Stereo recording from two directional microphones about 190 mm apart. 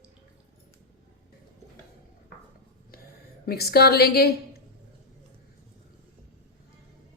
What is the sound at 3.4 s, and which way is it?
Speech, 55° left (ahead or behind).